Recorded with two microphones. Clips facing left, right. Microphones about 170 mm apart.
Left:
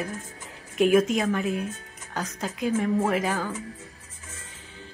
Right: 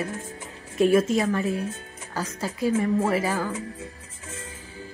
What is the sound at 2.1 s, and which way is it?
Speech, 5° right (ahead or behind).